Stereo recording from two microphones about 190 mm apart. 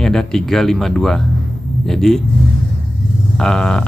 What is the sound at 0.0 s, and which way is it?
Speech, centre (ahead or behind).